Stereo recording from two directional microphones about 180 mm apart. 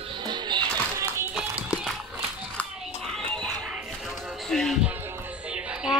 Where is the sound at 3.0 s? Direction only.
5° left (ahead or behind).